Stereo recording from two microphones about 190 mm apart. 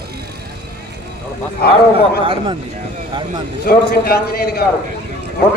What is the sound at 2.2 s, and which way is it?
Speech, 25° right (ahead or behind).